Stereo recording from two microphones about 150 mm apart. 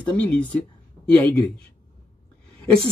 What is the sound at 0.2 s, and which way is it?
Speech, 10° left (ahead or behind).